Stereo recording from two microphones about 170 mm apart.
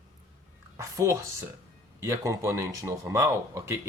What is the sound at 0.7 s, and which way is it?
Speech, 15° right (ahead or behind).